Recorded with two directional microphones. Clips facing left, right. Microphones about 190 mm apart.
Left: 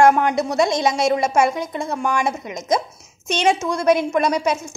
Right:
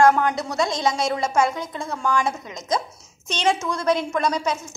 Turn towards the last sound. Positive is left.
turn(degrees=20)  # may be behind; listen again after turning